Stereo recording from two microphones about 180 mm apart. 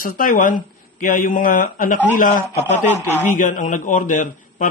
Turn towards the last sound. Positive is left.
turn(degrees=45)  # may be behind; listen again after turning